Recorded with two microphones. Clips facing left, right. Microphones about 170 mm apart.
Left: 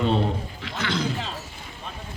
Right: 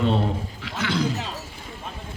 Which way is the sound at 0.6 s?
10° right (ahead or behind).